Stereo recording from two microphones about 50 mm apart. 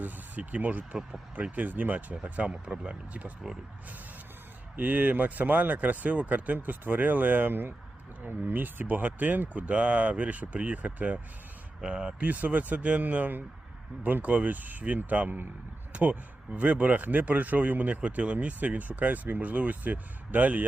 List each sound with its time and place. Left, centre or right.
0.0 s speech: right
2.5 s speech: centre
4.8 s speech: right
11.8 s speech: right
15.9 s a sound: right
16.6 s speech: right